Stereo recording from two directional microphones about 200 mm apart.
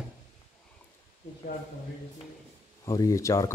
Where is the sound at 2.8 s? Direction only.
15° left (ahead or behind).